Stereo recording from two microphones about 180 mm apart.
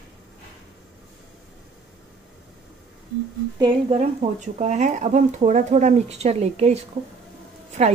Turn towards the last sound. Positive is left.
turn(degrees=-40)  # may be behind; listen again after turning